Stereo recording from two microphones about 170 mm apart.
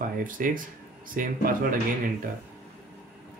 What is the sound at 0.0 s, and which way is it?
Speech, 55° right (ahead or behind).